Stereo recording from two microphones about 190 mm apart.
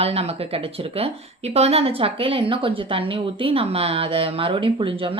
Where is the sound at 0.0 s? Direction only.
30° right (ahead or behind).